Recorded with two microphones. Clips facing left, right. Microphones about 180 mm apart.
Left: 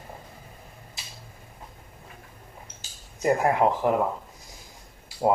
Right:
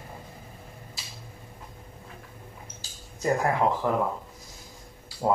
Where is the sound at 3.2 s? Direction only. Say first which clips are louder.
Left 3 dB; 20° left (ahead or behind).